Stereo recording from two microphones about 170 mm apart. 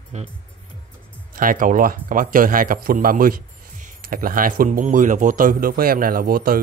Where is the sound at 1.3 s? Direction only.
55° right (ahead or behind).